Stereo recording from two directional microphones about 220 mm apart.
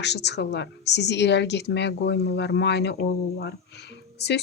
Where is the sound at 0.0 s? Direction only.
50° left (ahead or behind).